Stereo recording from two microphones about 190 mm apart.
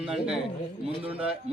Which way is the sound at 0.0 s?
5° right (ahead or behind).